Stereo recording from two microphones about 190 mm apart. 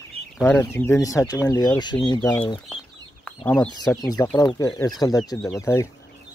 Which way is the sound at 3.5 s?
5° left (ahead or behind).